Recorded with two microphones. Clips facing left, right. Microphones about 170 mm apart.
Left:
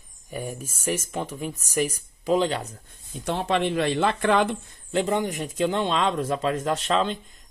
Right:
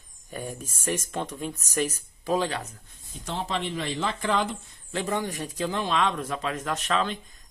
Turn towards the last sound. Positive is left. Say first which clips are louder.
# left 4 dB
turn(degrees=30)  # may be behind; listen again after turning